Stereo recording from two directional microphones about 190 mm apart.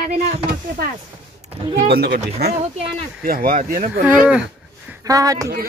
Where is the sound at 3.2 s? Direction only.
50° right (ahead or behind).